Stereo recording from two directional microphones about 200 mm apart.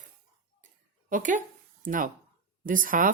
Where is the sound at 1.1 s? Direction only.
40° right (ahead or behind).